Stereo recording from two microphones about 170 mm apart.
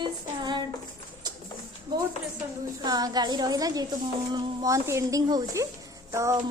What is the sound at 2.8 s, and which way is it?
A woman's voice, 20° right (ahead or behind).